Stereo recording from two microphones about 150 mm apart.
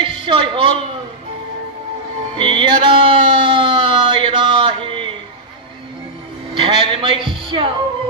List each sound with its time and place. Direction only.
0.0 s a sound: 35° right (ahead or behind)
2.3 s music: 35° right (ahead or behind)
6.5 s music: 35° right (ahead or behind)